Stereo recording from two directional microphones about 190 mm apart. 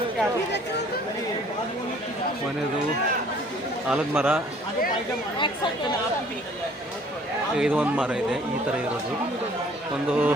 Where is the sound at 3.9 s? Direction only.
10° right (ahead or behind).